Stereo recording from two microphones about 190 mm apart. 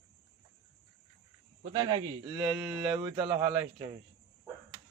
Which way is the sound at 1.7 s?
20° right (ahead or behind).